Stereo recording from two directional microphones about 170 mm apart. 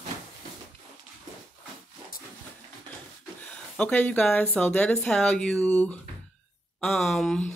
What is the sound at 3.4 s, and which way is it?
Speech, 5° left (ahead or behind).